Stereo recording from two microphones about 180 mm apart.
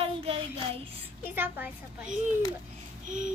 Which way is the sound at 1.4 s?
10° right (ahead or behind).